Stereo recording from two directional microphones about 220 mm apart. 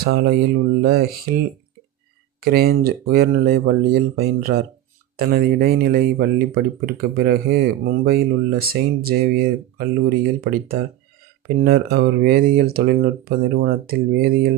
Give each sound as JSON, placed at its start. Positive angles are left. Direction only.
{"t": 0.0, "sound": "speech", "side_deg": -45}
{"t": 2.4, "sound": "speech", "side_deg": -45}